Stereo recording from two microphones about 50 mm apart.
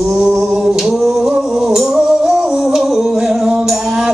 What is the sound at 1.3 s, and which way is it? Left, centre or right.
Music, centre.